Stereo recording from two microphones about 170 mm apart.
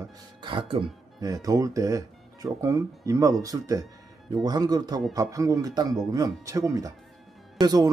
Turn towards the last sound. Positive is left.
turn(degrees=-25)  # may be behind; listen again after turning